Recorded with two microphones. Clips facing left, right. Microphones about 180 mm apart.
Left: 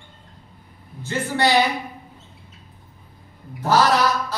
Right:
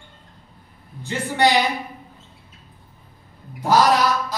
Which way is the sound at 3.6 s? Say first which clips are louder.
Right 1 dB; 15° right (ahead or behind).